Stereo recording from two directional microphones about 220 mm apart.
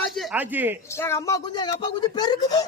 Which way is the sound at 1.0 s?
10° left (ahead or behind).